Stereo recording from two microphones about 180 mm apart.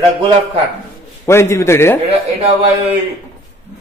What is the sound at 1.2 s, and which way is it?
Speech, 15° left (ahead or behind).